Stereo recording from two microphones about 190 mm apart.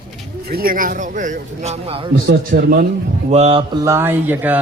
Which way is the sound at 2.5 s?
50° right (ahead or behind).